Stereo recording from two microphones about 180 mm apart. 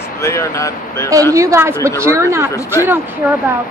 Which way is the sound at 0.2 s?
15° left (ahead or behind).